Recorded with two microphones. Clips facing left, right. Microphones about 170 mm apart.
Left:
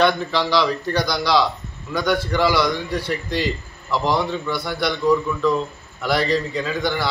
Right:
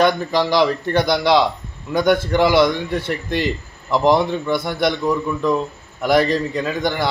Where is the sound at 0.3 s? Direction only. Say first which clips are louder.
Right 3 dB; 45° right (ahead or behind).